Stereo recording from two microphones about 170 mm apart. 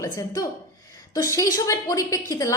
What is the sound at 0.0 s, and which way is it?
A woman's voice, 20° left (ahead or behind).